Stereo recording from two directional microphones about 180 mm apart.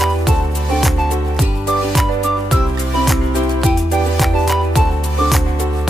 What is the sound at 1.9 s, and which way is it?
Music, centre (ahead or behind).